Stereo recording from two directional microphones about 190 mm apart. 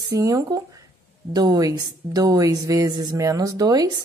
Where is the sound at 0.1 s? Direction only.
15° right (ahead or behind).